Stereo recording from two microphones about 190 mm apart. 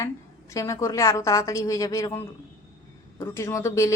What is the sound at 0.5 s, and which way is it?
A woman's voice, 15° left (ahead or behind).